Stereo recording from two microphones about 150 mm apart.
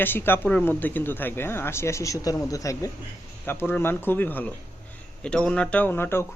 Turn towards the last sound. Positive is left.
turn(degrees=15)  # may be behind; listen again after turning